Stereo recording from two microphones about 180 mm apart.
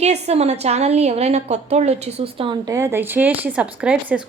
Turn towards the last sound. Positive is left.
turn(degrees=-5)  # may be behind; listen again after turning